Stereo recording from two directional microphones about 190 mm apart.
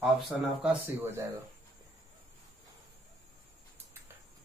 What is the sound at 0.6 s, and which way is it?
Speech, 5° right (ahead or behind).